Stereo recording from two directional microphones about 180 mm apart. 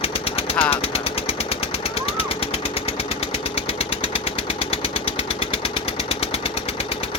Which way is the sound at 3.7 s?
30° left (ahead or behind).